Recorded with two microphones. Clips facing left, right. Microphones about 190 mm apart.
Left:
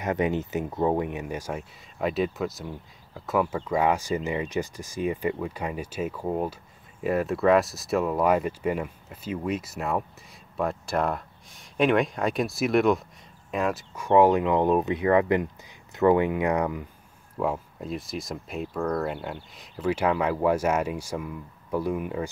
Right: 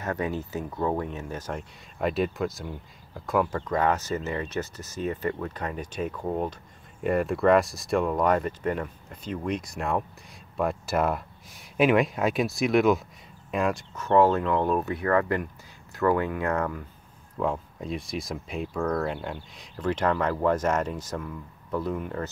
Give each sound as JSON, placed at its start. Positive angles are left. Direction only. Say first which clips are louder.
{"t": 0.0, "sound": "speech", "louder": "left 4 dB", "side_deg": 20}
{"t": 13.9, "sound": "speech", "louder": "left 2 dB", "side_deg": 10}
{"t": 17.4, "sound": "speech", "louder": "even", "side_deg": 5}